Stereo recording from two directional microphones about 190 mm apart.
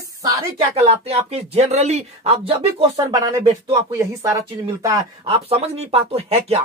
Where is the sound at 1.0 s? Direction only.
35° right (ahead or behind).